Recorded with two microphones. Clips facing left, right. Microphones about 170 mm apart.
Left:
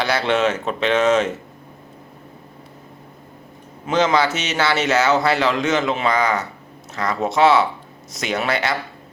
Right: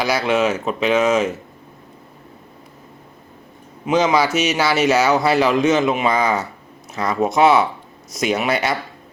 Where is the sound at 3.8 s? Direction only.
10° right (ahead or behind).